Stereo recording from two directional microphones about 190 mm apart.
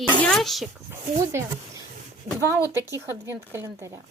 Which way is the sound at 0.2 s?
Centre (ahead or behind).